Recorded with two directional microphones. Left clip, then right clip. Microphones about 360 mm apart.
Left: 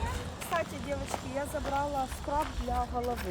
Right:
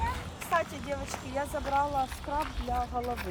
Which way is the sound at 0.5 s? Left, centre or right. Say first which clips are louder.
Right 3 dB; centre.